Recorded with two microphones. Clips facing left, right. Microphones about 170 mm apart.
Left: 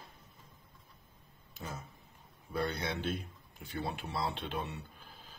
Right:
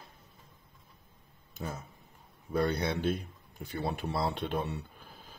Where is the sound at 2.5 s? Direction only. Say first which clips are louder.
Right 6 dB; 45° right (ahead or behind).